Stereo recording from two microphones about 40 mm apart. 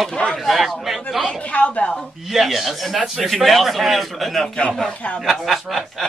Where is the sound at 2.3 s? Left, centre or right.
Centre.